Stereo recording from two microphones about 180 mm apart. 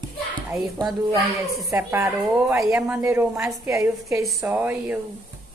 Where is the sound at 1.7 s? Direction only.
15° right (ahead or behind).